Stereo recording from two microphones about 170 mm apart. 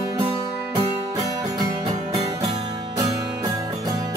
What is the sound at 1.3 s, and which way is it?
Music, 20° right (ahead or behind).